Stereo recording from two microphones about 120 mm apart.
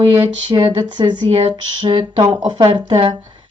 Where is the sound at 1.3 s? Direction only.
55° right (ahead or behind).